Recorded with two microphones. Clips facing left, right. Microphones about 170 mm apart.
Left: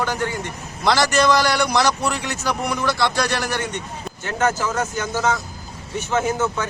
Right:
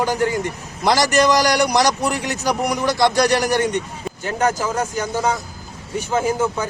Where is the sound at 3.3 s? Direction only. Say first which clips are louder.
Right 6 dB; 40° right (ahead or behind).